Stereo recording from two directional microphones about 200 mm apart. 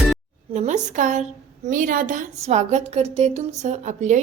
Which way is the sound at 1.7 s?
45° right (ahead or behind).